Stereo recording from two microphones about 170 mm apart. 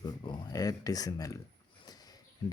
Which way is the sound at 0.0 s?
25° left (ahead or behind).